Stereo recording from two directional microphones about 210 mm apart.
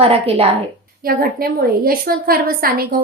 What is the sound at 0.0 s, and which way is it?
Speech, 30° right (ahead or behind).